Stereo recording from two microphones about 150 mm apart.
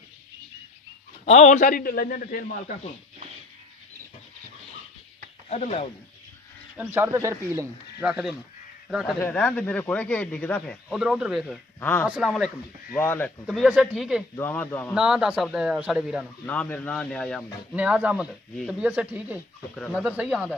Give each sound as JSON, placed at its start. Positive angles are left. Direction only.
{"t": 1.2, "sound": "a man's voice", "side_deg": 50}
{"t": 5.5, "sound": "speech", "side_deg": 45}
{"t": 6.8, "sound": "speech", "side_deg": -15}
{"t": 8.0, "sound": "speech", "side_deg": -5}
{"t": 9.2, "sound": "speech", "side_deg": 10}
{"t": 10.9, "sound": "a man's voice", "side_deg": -5}
{"t": 11.8, "sound": "speech", "side_deg": 10}
{"t": 12.1, "sound": "a man's voice", "side_deg": 0}
{"t": 13.0, "sound": "speech", "side_deg": 15}
{"t": 13.5, "sound": "a man's voice", "side_deg": 0}
{"t": 14.3, "sound": "speech", "side_deg": 15}
{"t": 15.0, "sound": "a man's voice", "side_deg": -5}
{"t": 16.4, "sound": "a man's voice", "side_deg": 10}
{"t": 17.7, "sound": "speech", "side_deg": -10}